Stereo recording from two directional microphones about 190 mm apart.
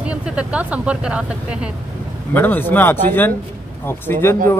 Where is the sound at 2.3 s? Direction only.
10° left (ahead or behind).